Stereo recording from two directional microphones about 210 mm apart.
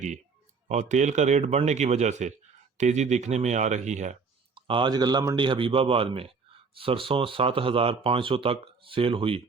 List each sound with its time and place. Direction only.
0.7 s speech: 35° right (ahead or behind)